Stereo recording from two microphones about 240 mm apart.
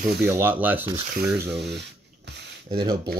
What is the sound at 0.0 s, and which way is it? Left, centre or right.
Speech, right.